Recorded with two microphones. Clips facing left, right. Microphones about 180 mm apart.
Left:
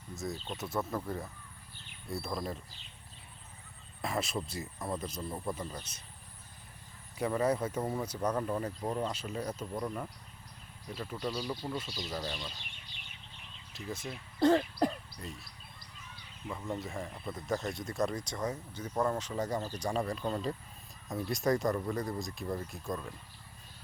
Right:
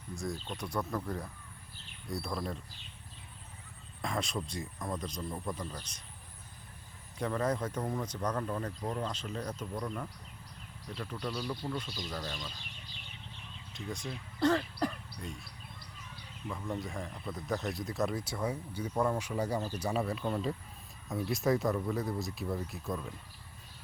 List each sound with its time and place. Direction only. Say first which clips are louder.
0.2 s speech: even; centre (ahead or behind)
4.0 s speech: left 1 dB; 5° left (ahead or behind)
7.2 s speech: left 2 dB; 10° left (ahead or behind)
13.7 s speech: even; 5° left (ahead or behind)
14.3 s speech: left 3 dB; 25° left (ahead or behind)
15.2 s speech: right 4 dB; centre (ahead or behind)
16.5 s speech: even; 5° left (ahead or behind)